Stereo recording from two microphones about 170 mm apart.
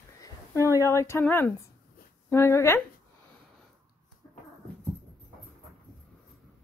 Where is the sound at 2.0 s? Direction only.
60° left (ahead or behind).